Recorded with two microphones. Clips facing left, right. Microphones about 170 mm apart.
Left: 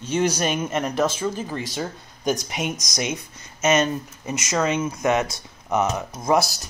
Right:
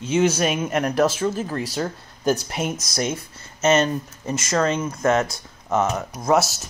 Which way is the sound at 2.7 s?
15° left (ahead or behind).